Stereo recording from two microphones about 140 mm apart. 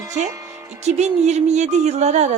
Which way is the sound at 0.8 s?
55° right (ahead or behind).